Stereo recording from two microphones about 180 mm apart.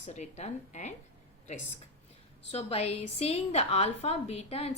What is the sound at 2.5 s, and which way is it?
A woman's voice, 35° left (ahead or behind).